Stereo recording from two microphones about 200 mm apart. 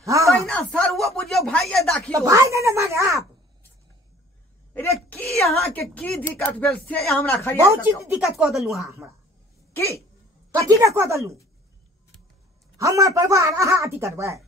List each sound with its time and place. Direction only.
0.0 s a sound: 15° right (ahead or behind)
0.3 s speech: centre (ahead or behind)
2.1 s a woman's voice: 15° right (ahead or behind)
4.7 s a sound: 5° left (ahead or behind)
5.5 s speech: 10° left (ahead or behind)
7.6 s a woman's voice: 15° right (ahead or behind)
8.1 s speech: 5° right (ahead or behind)
9.8 s speech: 15° left (ahead or behind)
10.5 s a woman's voice: 15° right (ahead or behind)
12.7 s a woman's voice: 15° right (ahead or behind)